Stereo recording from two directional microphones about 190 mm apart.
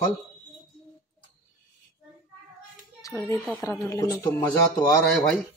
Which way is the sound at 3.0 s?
15° left (ahead or behind).